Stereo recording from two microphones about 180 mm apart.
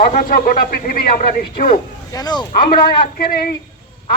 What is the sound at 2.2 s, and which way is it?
Speech, 25° left (ahead or behind).